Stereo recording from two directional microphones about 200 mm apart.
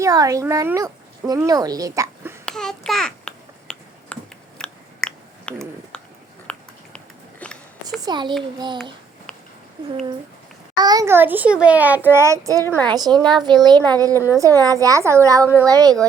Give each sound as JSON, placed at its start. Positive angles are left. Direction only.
{"t": 0.0, "sound": "speech", "side_deg": -15}
{"t": 2.5, "sound": "babbling", "side_deg": 5}
{"t": 6.5, "sound": "a sound", "side_deg": 5}
{"t": 8.0, "sound": "a woman's voice", "side_deg": -20}
{"t": 10.8, "sound": "a child's voice", "side_deg": -20}
{"t": 12.6, "sound": "a woman's voice", "side_deg": 10}
{"t": 12.9, "sound": "a woman's voice", "side_deg": -20}